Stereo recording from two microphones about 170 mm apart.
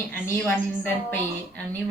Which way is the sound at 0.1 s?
10° left (ahead or behind).